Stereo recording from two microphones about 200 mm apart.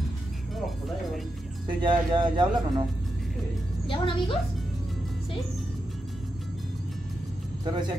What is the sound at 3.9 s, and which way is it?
Speech, 25° left (ahead or behind).